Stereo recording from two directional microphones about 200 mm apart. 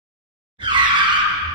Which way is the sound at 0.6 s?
25° right (ahead or behind).